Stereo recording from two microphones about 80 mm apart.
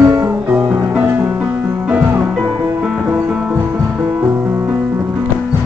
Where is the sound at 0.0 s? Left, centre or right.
Right.